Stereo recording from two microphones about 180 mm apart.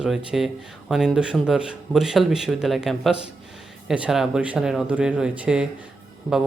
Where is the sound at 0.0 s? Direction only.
5° right (ahead or behind).